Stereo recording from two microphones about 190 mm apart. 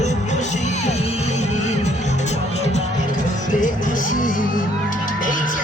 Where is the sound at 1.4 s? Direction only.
35° left (ahead or behind).